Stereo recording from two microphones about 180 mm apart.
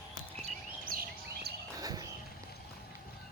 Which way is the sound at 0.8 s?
55° right (ahead or behind).